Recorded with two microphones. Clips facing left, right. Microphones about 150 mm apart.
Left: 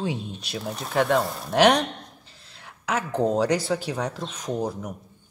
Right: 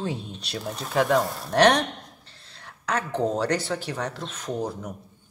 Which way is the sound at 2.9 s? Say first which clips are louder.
Left 2 dB; 10° left (ahead or behind).